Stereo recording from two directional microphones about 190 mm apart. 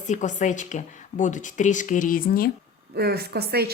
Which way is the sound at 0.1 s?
40° left (ahead or behind).